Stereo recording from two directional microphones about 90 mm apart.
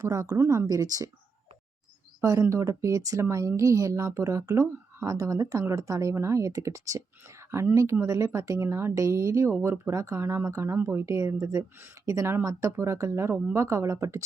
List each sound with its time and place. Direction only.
0.1 s speech: 35° right (ahead or behind)
2.2 s speech: 35° right (ahead or behind)